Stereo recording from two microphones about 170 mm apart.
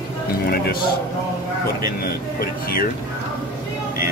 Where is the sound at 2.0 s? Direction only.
60° left (ahead or behind).